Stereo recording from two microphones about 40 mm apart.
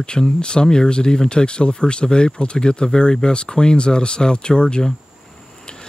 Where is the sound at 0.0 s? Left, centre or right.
Left.